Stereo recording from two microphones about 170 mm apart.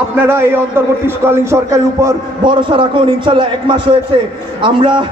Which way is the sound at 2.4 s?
30° right (ahead or behind).